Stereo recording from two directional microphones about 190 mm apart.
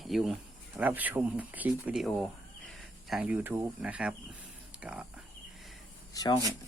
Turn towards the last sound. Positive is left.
turn(degrees=20)  # may be behind; listen again after turning